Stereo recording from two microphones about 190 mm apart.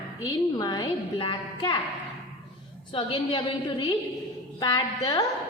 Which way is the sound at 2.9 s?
25° left (ahead or behind).